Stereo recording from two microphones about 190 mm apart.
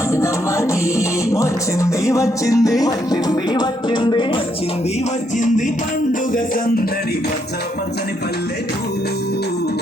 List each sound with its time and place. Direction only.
0.1 s music: 15° left (ahead or behind)